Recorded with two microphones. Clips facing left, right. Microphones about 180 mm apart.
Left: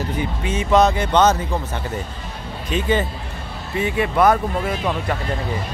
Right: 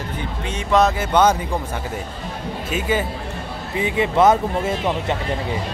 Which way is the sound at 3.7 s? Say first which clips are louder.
Right 1 dB; 20° right (ahead or behind).